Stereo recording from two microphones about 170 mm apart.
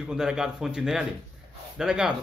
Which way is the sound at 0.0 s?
5° right (ahead or behind).